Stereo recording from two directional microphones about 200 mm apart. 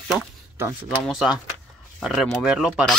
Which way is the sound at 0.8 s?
Centre (ahead or behind).